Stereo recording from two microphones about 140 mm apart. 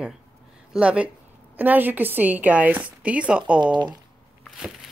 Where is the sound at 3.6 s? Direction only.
30° right (ahead or behind).